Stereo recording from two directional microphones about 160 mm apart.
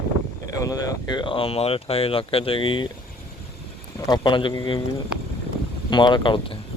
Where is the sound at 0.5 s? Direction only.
20° left (ahead or behind).